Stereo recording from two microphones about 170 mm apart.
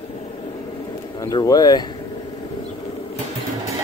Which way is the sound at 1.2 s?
25° left (ahead or behind).